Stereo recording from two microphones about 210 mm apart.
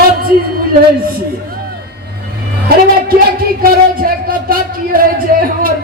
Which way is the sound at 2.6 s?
45° right (ahead or behind).